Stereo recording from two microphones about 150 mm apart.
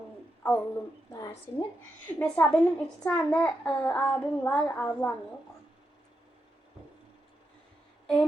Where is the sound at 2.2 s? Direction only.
10° left (ahead or behind).